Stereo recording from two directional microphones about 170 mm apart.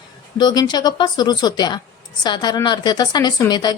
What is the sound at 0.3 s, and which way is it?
Speech, 25° left (ahead or behind).